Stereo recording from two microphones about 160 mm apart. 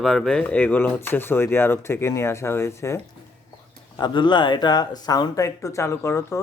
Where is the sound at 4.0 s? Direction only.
30° left (ahead or behind).